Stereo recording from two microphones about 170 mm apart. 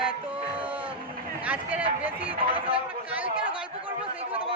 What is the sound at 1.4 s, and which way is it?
Speech, 10° right (ahead or behind).